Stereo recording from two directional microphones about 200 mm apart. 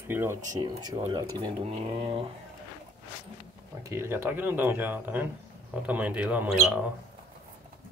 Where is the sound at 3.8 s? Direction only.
15° right (ahead or behind).